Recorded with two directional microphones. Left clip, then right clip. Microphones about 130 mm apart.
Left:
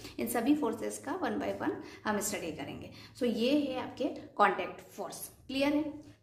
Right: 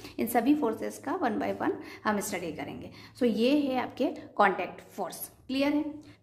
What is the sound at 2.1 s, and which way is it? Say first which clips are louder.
A woman's voice: right 2 dB; 35° right (ahead or behind).